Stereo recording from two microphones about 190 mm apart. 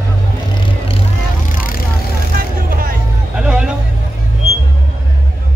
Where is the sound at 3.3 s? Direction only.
5° right (ahead or behind).